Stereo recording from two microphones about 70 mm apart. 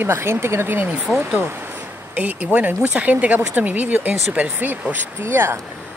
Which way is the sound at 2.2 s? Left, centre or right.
Right.